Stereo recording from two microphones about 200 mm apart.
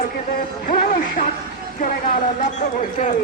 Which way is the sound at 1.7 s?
40° left (ahead or behind).